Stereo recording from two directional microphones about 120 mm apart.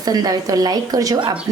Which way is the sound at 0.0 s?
30° right (ahead or behind).